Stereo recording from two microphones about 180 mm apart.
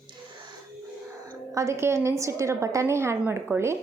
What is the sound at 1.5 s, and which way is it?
A woman's voice, 15° right (ahead or behind).